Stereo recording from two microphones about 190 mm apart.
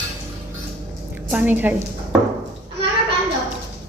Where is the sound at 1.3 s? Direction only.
10° right (ahead or behind).